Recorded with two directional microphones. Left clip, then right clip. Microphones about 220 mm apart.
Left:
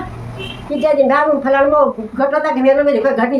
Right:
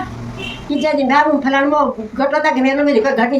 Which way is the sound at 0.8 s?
15° left (ahead or behind).